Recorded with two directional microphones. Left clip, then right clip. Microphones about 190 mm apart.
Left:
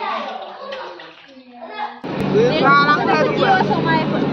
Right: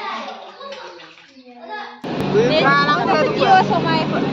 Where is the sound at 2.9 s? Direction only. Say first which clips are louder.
Even; 5° left (ahead or behind).